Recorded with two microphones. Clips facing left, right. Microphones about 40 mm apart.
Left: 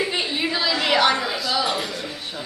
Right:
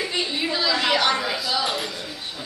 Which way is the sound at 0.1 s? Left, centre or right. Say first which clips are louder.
Left 1 dB; centre.